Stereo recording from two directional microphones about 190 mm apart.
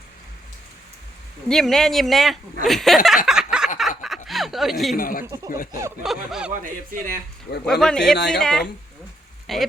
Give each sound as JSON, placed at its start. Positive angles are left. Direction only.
{"t": 1.5, "sound": "speech", "side_deg": 0}
{"t": 3.2, "sound": "a sound", "side_deg": -5}
{"t": 3.8, "sound": "snicker", "side_deg": 0}
{"t": 4.9, "sound": "speech", "side_deg": 50}
{"t": 5.2, "sound": "speech", "side_deg": -20}
{"t": 5.5, "sound": "speech", "side_deg": 45}
{"t": 6.0, "sound": "speech", "side_deg": -5}
{"t": 6.5, "sound": "speech", "side_deg": -45}
{"t": 7.6, "sound": "speech", "side_deg": 5}